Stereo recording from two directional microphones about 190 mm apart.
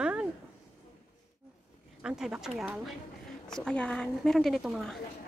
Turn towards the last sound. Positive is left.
turn(degrees=0)  # may be behind; listen again after turning